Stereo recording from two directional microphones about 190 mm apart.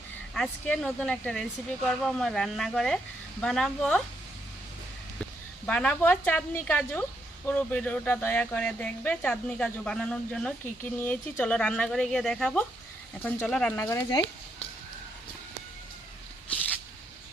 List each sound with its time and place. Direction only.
0.3 s speech: 5° left (ahead or behind)
5.6 s speech: 5° left (ahead or behind)